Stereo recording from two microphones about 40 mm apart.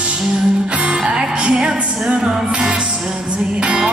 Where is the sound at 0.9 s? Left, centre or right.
Centre.